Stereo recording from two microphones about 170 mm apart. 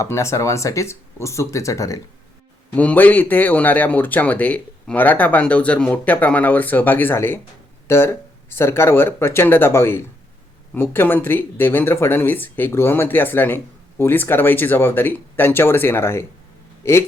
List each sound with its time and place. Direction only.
0.0 s a man's voice: 15° left (ahead or behind)